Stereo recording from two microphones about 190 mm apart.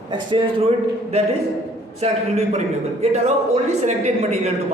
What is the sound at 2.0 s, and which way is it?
Speech, 35° right (ahead or behind).